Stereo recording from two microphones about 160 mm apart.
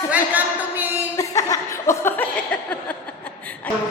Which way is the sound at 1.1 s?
20° left (ahead or behind).